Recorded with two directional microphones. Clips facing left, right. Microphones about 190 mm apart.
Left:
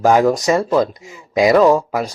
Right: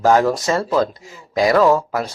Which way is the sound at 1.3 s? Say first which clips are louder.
Left 3 dB; 20° left (ahead or behind).